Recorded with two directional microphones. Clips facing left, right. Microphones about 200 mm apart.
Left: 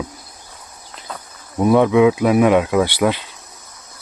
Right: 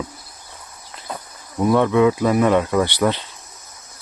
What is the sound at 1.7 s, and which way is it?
Speech, 10° left (ahead or behind).